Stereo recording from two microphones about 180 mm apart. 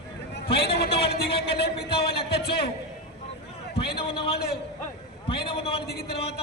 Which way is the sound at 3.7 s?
30° left (ahead or behind).